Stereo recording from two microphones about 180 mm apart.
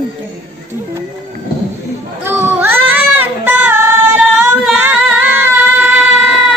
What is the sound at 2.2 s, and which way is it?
Children playing, 10° right (ahead or behind).